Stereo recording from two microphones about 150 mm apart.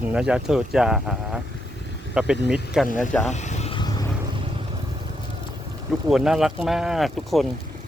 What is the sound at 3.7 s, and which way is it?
Vehicle, 30° left (ahead or behind).